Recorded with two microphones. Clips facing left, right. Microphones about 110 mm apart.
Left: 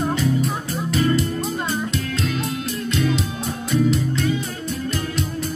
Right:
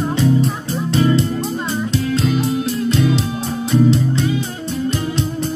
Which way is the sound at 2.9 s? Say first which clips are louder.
Right 3 dB; 30° right (ahead or behind).